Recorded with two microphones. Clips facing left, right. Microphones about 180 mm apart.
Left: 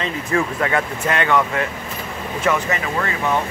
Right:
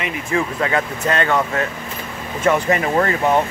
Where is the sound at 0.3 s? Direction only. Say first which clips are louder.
Even; 25° right (ahead or behind).